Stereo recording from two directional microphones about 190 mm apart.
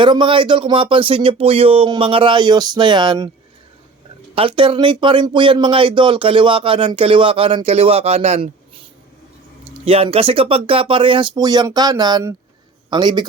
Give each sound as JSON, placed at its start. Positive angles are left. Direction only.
{"t": 0.0, "sound": "speech", "side_deg": -25}
{"t": 4.4, "sound": "speech", "side_deg": -25}
{"t": 9.8, "sound": "speech", "side_deg": -30}